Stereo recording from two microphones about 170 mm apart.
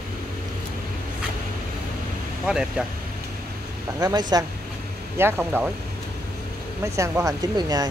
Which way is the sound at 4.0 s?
25° right (ahead or behind).